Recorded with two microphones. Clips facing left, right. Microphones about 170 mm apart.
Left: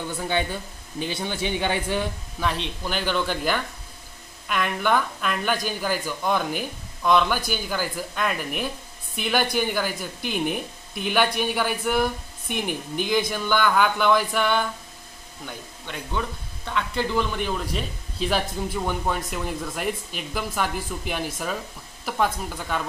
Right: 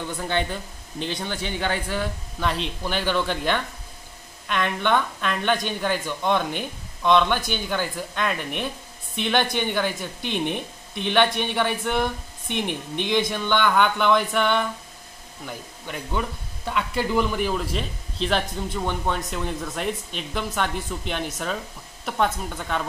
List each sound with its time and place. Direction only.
0.9 s speech: 10° left (ahead or behind)
2.4 s speech: centre (ahead or behind)